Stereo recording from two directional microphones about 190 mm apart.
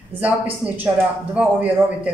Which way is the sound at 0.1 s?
10° right (ahead or behind).